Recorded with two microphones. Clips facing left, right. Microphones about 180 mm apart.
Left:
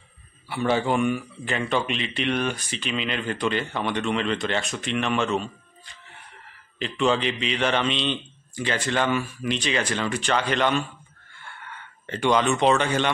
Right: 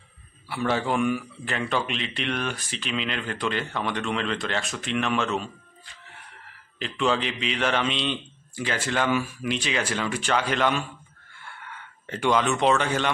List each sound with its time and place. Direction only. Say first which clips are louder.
0.5 s speech: left 2 dB; centre (ahead or behind)